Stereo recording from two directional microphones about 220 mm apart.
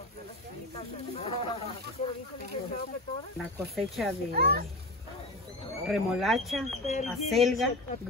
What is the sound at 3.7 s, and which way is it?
Speech, centre (ahead or behind).